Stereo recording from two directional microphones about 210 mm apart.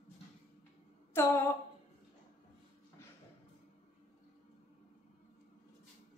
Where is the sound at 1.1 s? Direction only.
10° left (ahead or behind).